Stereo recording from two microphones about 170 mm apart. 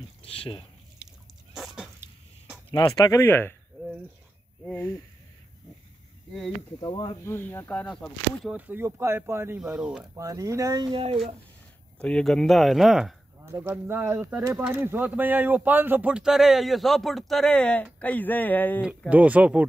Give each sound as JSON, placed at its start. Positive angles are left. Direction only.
{"t": 0.2, "sound": "speech", "side_deg": 35}
{"t": 1.5, "sound": "dog", "side_deg": 0}
{"t": 2.0, "sound": "a sound", "side_deg": -10}
{"t": 2.7, "sound": "speech", "side_deg": 30}
{"t": 3.2, "sound": "speech", "side_deg": 15}
{"t": 4.6, "sound": "speech", "side_deg": 15}
{"t": 6.8, "sound": "speech", "side_deg": 25}
{"t": 7.2, "sound": "speech", "side_deg": 15}
{"t": 8.5, "sound": "speech", "side_deg": -10}
{"t": 9.6, "sound": "speech", "side_deg": -5}
{"t": 10.1, "sound": "speech", "side_deg": -20}
{"t": 12.0, "sound": "speech", "side_deg": 5}
{"t": 13.5, "sound": "speech", "side_deg": -15}
{"t": 18.8, "sound": "speech", "side_deg": -5}